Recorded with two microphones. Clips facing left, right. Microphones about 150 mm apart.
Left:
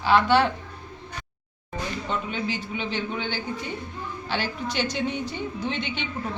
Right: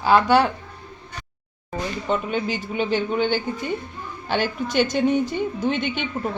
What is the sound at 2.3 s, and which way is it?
A woman's voice, 50° right (ahead or behind).